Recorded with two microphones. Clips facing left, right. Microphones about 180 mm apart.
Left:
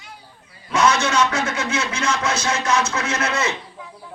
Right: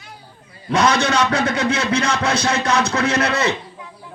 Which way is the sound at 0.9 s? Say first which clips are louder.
Right 2 dB; 35° right (ahead or behind).